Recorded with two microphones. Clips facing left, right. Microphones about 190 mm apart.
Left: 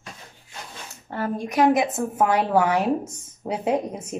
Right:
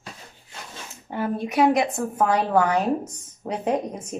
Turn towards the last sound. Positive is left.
turn(degrees=10)  # may be behind; listen again after turning